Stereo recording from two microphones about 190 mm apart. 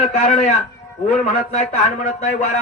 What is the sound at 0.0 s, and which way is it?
Speech, 35° left (ahead or behind).